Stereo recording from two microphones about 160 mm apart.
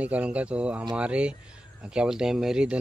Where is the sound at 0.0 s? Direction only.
10° right (ahead or behind).